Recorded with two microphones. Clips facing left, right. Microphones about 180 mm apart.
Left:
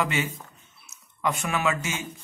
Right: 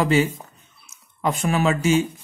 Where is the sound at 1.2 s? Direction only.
35° right (ahead or behind).